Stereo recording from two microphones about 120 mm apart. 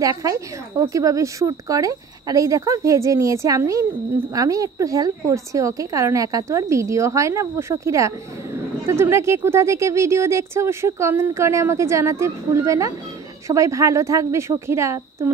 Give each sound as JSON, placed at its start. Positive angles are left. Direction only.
{"t": 0.0, "sound": "speech", "side_deg": -30}